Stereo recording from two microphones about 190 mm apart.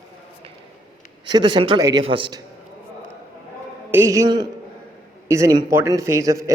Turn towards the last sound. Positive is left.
turn(degrees=-15)  # may be behind; listen again after turning